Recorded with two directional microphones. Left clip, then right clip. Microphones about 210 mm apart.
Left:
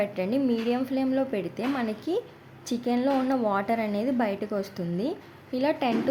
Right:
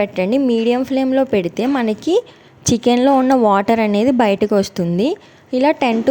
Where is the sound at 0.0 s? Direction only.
40° right (ahead or behind).